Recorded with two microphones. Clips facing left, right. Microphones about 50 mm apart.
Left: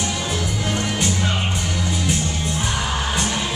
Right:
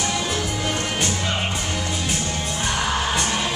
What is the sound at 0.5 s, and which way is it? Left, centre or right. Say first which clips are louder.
Music: left 1 dB; centre.